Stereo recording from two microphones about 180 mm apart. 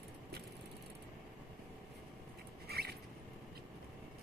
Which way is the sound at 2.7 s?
60° right (ahead or behind).